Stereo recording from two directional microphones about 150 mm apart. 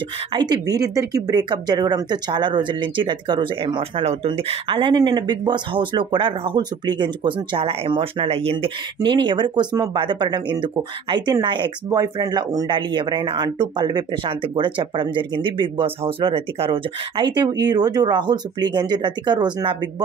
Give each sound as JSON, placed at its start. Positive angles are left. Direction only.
{"t": 0.3, "sound": "speech", "side_deg": -30}